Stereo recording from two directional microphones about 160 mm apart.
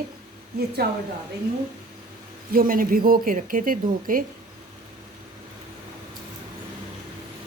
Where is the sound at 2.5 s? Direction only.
65° right (ahead or behind).